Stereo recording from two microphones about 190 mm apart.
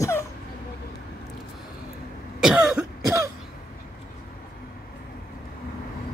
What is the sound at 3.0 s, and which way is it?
Throat clearing, 15° right (ahead or behind).